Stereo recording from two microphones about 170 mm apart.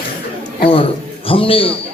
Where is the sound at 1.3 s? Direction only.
30° left (ahead or behind).